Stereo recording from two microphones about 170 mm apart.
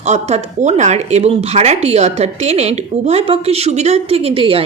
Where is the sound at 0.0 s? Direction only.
40° right (ahead or behind).